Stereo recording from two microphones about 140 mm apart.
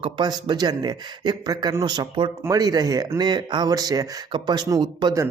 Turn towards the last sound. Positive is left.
turn(degrees=-30)  # may be behind; listen again after turning